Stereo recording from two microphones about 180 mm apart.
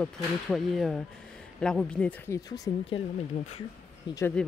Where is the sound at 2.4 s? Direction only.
25° left (ahead or behind).